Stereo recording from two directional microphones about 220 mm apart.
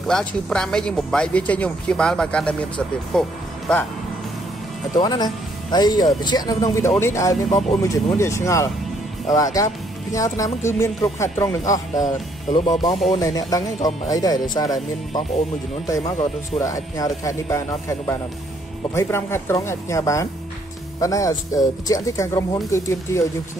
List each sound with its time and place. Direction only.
0.1 s speech: 5° left (ahead or behind)
4.9 s speech: 20° left (ahead or behind)
11.9 s speech: 35° left (ahead or behind)
13.1 s speech: 15° left (ahead or behind)
16.5 s speech: 15° left (ahead or behind)